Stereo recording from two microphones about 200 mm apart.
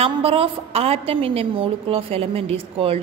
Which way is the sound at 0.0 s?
30° right (ahead or behind).